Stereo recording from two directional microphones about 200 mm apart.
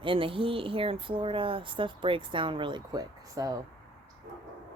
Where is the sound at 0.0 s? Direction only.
25° right (ahead or behind).